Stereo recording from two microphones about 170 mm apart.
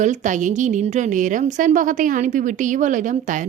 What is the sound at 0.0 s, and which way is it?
A woman's voice, 45° right (ahead or behind).